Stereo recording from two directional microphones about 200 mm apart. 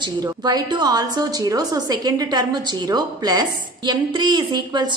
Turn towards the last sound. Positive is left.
turn(degrees=-20)  # may be behind; listen again after turning